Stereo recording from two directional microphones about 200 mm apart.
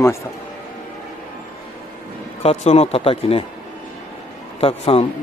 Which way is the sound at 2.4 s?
30° left (ahead or behind).